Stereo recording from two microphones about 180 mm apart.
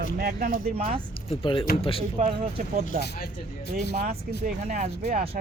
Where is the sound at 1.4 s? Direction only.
30° left (ahead or behind).